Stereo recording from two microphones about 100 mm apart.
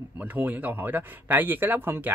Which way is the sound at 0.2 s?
15° right (ahead or behind).